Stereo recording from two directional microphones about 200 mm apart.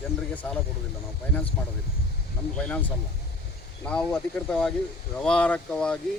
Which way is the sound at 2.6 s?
5° left (ahead or behind).